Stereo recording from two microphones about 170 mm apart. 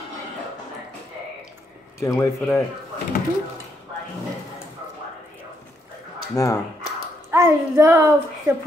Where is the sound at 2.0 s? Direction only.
15° left (ahead or behind).